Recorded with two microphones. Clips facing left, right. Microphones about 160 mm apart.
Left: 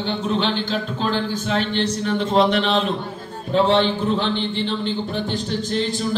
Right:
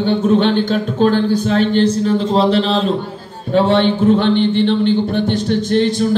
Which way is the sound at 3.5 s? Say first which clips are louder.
Right 4 dB; 55° right (ahead or behind).